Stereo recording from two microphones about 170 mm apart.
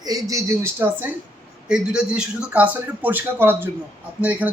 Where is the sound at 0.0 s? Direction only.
20° right (ahead or behind).